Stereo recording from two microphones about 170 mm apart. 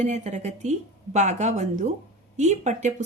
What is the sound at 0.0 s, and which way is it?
Speech, 45° right (ahead or behind).